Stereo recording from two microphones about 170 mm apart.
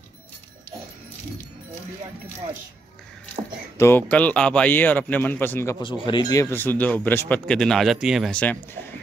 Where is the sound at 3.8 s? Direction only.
10° left (ahead or behind).